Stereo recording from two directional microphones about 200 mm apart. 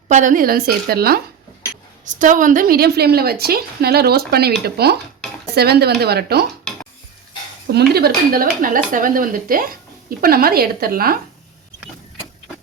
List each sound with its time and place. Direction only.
0.1 s a woman's voice: 40° right (ahead or behind)
2.0 s a woman's voice: 40° right (ahead or behind)
7.7 s a woman's voice: 55° right (ahead or behind)